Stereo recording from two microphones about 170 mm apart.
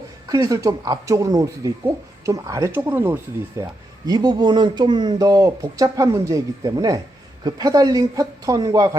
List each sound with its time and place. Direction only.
0.3 s speech: 20° right (ahead or behind)
3.6 s speech: 20° right (ahead or behind)